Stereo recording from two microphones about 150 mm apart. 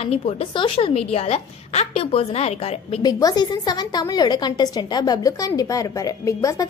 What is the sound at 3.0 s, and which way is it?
A woman's voice, 25° left (ahead or behind).